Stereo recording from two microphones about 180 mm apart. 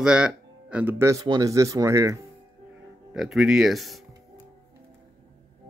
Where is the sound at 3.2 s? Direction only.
Centre (ahead or behind).